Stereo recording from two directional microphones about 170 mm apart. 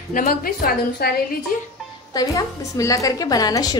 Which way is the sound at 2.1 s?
20° left (ahead or behind).